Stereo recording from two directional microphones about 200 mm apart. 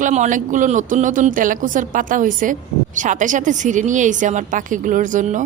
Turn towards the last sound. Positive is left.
turn(degrees=-40)  # may be behind; listen again after turning